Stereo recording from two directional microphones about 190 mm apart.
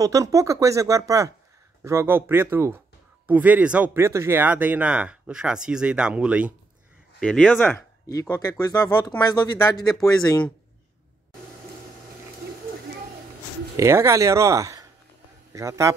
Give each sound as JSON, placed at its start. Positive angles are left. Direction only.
{"t": 0.0, "sound": "speech", "side_deg": -20}
{"t": 7.2, "sound": "speech", "side_deg": 5}
{"t": 8.1, "sound": "speech", "side_deg": 15}
{"t": 13.7, "sound": "speech", "side_deg": -15}